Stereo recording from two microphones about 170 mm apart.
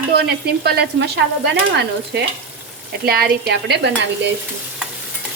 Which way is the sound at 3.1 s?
65° right (ahead or behind).